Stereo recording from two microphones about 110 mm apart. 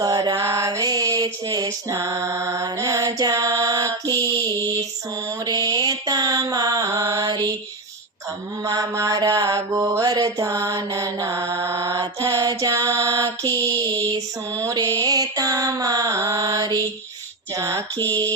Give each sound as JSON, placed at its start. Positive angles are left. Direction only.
{"t": 0.0, "sound": "mantra", "side_deg": -35}
{"t": 8.6, "sound": "mantra", "side_deg": -35}
{"t": 17.5, "sound": "a sound", "side_deg": -30}